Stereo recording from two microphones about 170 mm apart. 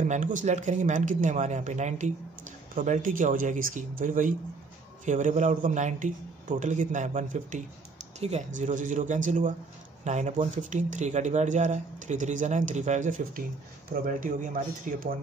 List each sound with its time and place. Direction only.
0.1 s a man's voice: 50° right (ahead or behind)